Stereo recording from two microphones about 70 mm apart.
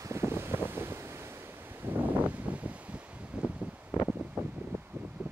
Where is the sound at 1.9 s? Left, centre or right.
Right.